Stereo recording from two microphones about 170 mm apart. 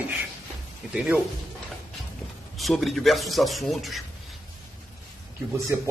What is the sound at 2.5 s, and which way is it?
A man's voice, centre (ahead or behind).